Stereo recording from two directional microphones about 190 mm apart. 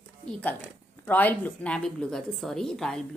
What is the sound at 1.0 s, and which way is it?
A woman's voice, 10° left (ahead or behind).